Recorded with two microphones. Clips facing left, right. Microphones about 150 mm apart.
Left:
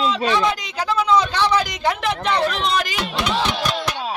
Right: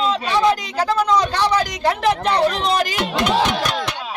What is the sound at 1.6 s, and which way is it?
Speech, 40° right (ahead or behind).